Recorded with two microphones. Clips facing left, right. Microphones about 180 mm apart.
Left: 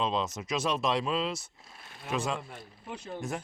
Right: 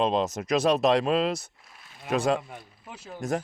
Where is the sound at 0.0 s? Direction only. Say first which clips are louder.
Right 6 dB; 55° right (ahead or behind).